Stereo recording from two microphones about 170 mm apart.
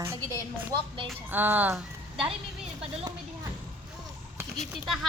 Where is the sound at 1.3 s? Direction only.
10° right (ahead or behind).